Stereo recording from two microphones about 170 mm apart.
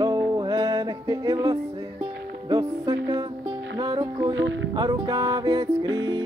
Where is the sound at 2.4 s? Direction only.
20° right (ahead or behind).